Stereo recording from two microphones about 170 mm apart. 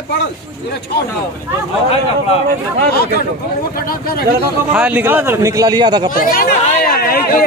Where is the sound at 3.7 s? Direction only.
60° left (ahead or behind).